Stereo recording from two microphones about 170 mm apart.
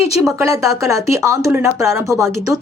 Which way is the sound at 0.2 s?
15° right (ahead or behind).